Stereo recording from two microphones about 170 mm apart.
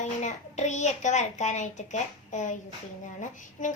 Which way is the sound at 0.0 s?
45° left (ahead or behind).